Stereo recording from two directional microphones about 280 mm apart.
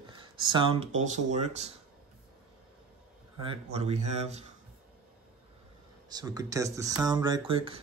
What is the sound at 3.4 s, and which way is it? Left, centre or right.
Speech, centre.